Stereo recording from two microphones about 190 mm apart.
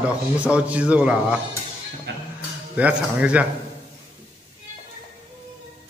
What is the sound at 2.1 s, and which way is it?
Music, 65° right (ahead or behind).